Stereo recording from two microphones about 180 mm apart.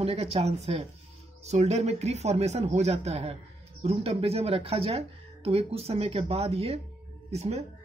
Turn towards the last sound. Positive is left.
turn(degrees=-35)  # may be behind; listen again after turning